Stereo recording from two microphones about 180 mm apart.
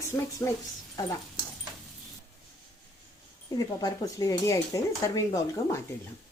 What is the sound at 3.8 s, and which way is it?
Speech, 20° left (ahead or behind).